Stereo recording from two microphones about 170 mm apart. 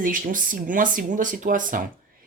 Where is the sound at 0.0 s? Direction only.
50° right (ahead or behind).